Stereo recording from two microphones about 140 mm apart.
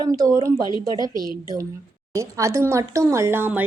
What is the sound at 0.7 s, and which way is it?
Speech, 30° left (ahead or behind).